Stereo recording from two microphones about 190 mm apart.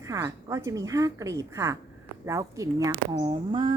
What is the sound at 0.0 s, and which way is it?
A woman's voice, 15° right (ahead or behind).